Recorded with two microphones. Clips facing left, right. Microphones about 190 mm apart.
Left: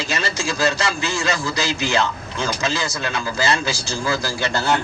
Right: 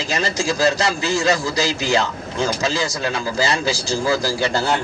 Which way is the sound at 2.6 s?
35° right (ahead or behind).